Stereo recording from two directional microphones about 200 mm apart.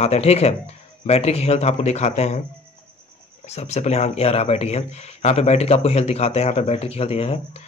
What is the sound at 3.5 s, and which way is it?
A man's voice, 35° left (ahead or behind).